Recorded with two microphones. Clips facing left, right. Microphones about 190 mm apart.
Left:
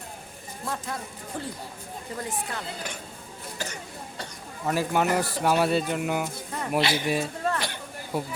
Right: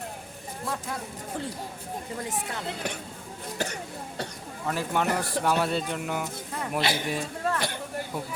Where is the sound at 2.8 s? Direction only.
65° right (ahead or behind).